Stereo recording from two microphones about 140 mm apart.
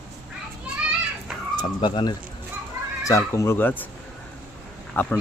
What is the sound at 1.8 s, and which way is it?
Speech, 35° left (ahead or behind).